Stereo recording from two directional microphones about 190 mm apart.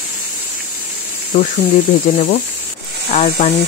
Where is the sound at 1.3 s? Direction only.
40° left (ahead or behind).